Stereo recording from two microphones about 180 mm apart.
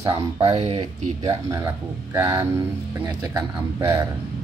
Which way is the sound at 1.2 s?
15° right (ahead or behind).